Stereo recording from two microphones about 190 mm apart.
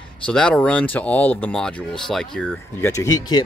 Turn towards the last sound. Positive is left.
turn(degrees=20)  # may be behind; listen again after turning